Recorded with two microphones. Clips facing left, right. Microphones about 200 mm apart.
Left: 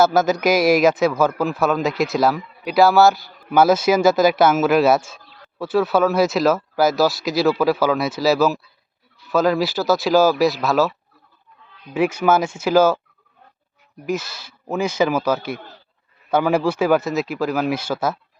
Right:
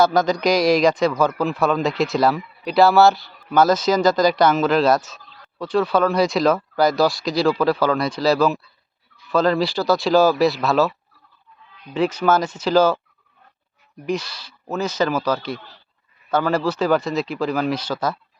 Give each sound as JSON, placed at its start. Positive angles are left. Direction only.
{"t": 0.0, "sound": "speech", "side_deg": 5}
{"t": 11.9, "sound": "speech", "side_deg": 10}
{"t": 14.0, "sound": "speech", "side_deg": 5}
{"t": 15.5, "sound": "speech", "side_deg": 50}
{"t": 16.3, "sound": "speech", "side_deg": 10}